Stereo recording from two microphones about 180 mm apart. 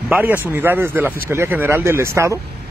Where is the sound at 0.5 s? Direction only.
10° right (ahead or behind).